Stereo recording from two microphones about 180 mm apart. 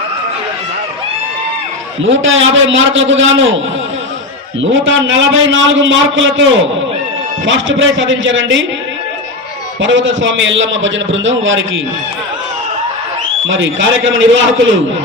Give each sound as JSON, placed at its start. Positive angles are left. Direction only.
{"t": 2.0, "sound": "a man's voice", "side_deg": -90}
{"t": 4.6, "sound": "a man's voice", "side_deg": -90}
{"t": 9.8, "sound": "a man's voice", "side_deg": -90}
{"t": 13.5, "sound": "a man's voice", "side_deg": -90}